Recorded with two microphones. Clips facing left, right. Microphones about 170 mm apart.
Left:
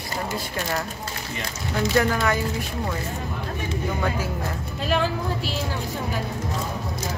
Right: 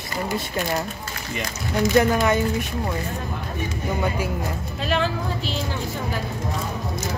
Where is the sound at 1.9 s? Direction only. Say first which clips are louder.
Right 3 dB; 20° right (ahead or behind).